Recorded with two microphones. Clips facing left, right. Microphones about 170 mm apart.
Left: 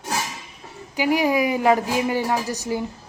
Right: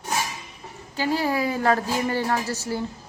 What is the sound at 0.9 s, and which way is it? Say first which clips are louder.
Speech: left 4 dB; 15° left (ahead or behind).